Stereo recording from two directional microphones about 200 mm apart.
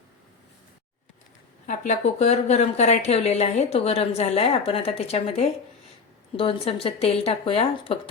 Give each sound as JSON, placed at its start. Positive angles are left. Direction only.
{"t": 1.6, "sound": "speech", "side_deg": 40}